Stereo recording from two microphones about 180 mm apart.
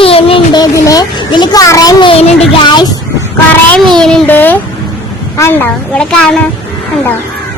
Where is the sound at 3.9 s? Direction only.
5° left (ahead or behind).